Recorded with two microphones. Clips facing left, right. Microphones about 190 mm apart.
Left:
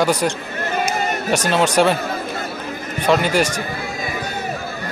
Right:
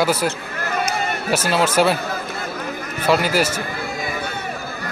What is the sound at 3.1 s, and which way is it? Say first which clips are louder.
Speech: left 1 dB; 5° right (ahead or behind).